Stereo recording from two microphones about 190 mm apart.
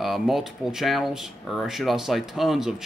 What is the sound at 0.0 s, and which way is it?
Speech, centre (ahead or behind).